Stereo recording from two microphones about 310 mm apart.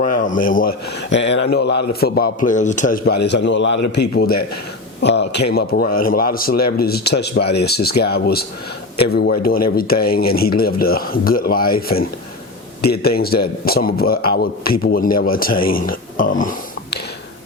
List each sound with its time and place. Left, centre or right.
0.0 s a man's voice: left